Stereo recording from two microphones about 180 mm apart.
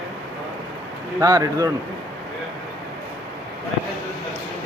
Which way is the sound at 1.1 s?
15° right (ahead or behind).